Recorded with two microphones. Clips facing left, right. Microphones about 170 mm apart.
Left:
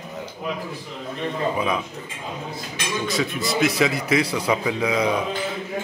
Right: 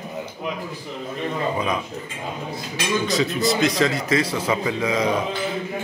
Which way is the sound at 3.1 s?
Centre (ahead or behind).